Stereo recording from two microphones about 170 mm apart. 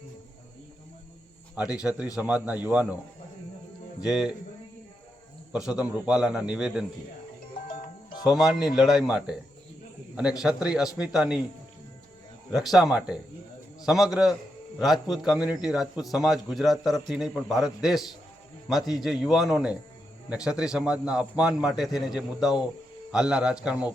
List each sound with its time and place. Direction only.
1.5 s a man's voice: 5° right (ahead or behind)
4.0 s a man's voice: 5° right (ahead or behind)
5.5 s a man's voice: 5° right (ahead or behind)
8.4 s a man's voice: centre (ahead or behind)
10.4 s a man's voice: 5° right (ahead or behind)
12.5 s a man's voice: centre (ahead or behind)
14.9 s a man's voice: 25° left (ahead or behind)
15.2 s a man's voice: 5° right (ahead or behind)